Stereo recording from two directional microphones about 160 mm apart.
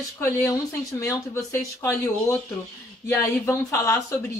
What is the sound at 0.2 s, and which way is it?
Speech, 15° left (ahead or behind).